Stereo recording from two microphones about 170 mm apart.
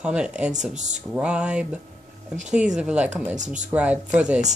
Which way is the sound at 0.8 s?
45° right (ahead or behind).